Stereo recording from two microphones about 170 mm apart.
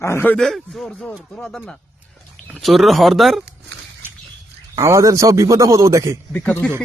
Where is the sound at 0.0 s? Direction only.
15° left (ahead or behind).